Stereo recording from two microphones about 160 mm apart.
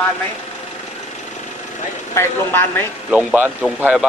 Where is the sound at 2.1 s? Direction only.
15° left (ahead or behind).